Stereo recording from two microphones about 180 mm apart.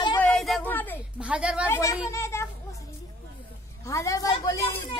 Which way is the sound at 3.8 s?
15° left (ahead or behind).